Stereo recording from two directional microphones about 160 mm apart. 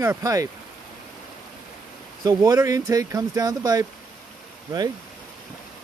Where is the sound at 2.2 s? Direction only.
25° right (ahead or behind).